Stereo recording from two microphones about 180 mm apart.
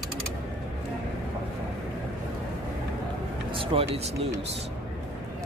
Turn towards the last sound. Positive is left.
turn(degrees=-35)  # may be behind; listen again after turning